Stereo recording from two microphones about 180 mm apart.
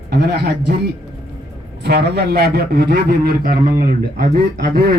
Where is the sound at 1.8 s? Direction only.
65° right (ahead or behind).